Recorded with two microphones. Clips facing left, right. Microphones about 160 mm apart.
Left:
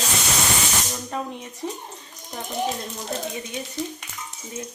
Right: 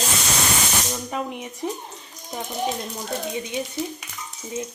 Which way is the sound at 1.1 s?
10° right (ahead or behind).